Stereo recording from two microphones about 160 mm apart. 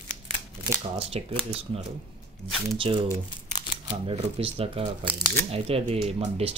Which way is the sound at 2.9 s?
30° right (ahead or behind).